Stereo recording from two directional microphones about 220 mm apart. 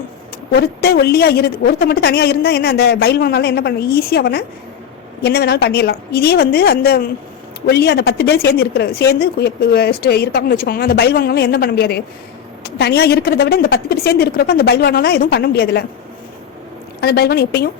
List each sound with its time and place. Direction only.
0.5 s a woman's voice: 45° left (ahead or behind)
17.0 s a woman's voice: 45° left (ahead or behind)